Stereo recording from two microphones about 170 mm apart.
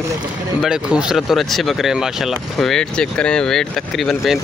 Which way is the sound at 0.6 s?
5° right (ahead or behind).